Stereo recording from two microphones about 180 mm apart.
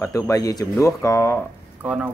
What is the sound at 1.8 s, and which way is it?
Speech, 5° right (ahead or behind).